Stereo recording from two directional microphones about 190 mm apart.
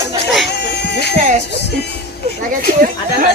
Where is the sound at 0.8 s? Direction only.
60° left (ahead or behind).